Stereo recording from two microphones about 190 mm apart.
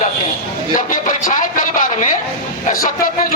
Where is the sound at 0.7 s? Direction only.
45° left (ahead or behind).